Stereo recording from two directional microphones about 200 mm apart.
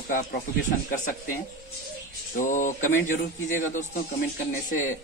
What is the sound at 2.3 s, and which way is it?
Speech, 40° left (ahead or behind).